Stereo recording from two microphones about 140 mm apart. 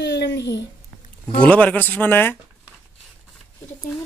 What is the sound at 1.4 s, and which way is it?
Speech, 10° left (ahead or behind).